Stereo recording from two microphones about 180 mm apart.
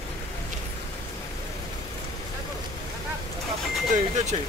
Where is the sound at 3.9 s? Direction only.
40° right (ahead or behind).